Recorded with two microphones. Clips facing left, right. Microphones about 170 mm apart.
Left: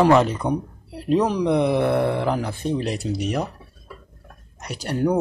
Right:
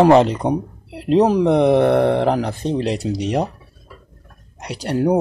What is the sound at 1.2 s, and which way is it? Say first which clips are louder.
Speech: right 6 dB; 50° right (ahead or behind).